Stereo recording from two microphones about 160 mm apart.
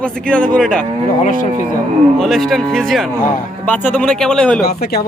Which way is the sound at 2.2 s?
Centre (ahead or behind).